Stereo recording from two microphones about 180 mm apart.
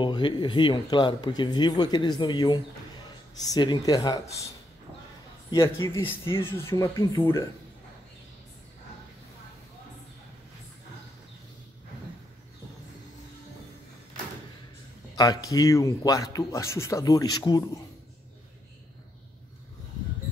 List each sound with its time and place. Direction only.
0.0 s speech: 25° left (ahead or behind)
5.5 s speech: 20° left (ahead or behind)
15.1 s speech: 20° left (ahead or behind)